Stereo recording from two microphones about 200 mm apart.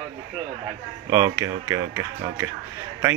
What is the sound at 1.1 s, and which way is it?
Speech, 15° right (ahead or behind).